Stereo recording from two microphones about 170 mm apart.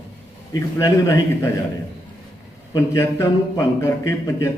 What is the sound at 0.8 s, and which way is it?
Speech, 20° left (ahead or behind).